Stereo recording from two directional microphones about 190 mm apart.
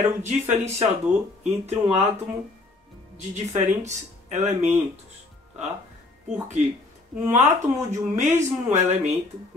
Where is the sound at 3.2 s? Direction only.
35° right (ahead or behind).